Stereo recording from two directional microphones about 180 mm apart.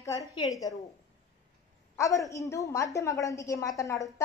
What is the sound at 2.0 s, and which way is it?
A woman's voice, 15° left (ahead or behind).